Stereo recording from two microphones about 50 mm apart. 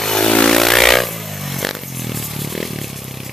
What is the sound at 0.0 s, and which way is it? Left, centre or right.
Vehicle, centre.